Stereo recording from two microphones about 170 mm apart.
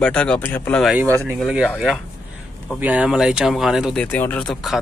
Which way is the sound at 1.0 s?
15° right (ahead or behind).